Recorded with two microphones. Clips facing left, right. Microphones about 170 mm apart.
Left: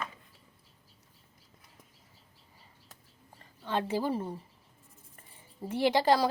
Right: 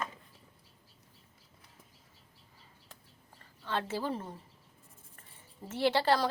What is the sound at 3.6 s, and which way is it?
Speech, 15° left (ahead or behind).